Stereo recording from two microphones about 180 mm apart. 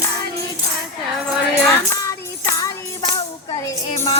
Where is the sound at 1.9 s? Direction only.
15° left (ahead or behind).